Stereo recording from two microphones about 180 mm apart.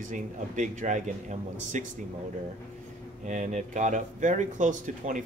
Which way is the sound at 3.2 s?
45° right (ahead or behind).